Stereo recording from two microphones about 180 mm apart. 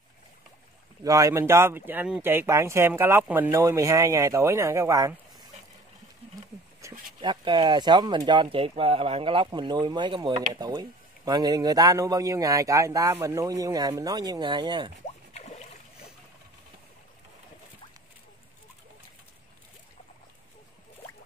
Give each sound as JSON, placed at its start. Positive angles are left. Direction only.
{"t": 1.0, "sound": "speech", "side_deg": -20}
{"t": 6.8, "sound": "a sound", "side_deg": -15}
{"t": 7.2, "sound": "speech", "side_deg": -25}